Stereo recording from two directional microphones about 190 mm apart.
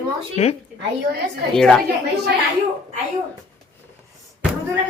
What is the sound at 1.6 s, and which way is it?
Speech, centre (ahead or behind).